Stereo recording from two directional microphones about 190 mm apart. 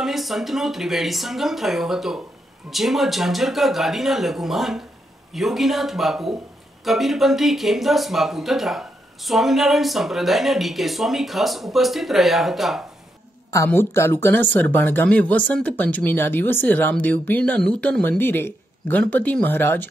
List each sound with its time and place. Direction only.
0.0 s speech: centre (ahead or behind)
13.5 s speech: 15° left (ahead or behind)